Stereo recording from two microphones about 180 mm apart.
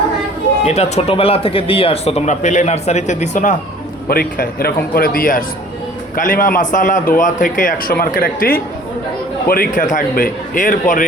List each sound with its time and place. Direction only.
0.6 s speech: 35° left (ahead or behind)
4.1 s a man's voice: 55° left (ahead or behind)